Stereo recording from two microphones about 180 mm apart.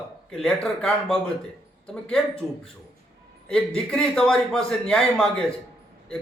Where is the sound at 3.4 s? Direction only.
5° left (ahead or behind).